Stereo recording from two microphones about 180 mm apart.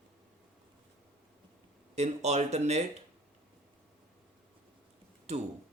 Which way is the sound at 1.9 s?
40° right (ahead or behind).